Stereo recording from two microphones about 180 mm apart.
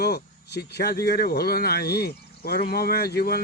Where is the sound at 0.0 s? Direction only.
65° left (ahead or behind).